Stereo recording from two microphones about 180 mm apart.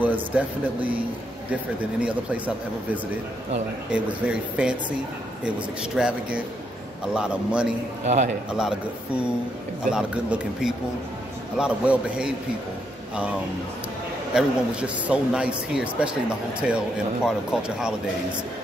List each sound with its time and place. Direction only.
0.0 s speech: 10° right (ahead or behind)
5.9 s speech: 5° right (ahead or behind)
8.0 s a man's voice: 40° right (ahead or behind)
8.5 s speech: 5° right (ahead or behind)
14.3 s speech: 5° right (ahead or behind)